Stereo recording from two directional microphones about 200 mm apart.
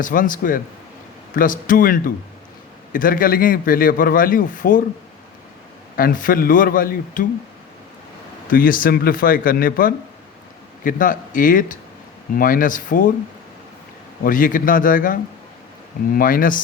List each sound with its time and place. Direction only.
0.0 s a man's voice: 40° left (ahead or behind)
6.0 s a man's voice: 45° left (ahead or behind)
8.4 s a man's voice: 45° left (ahead or behind)
14.3 s a man's voice: 45° left (ahead or behind)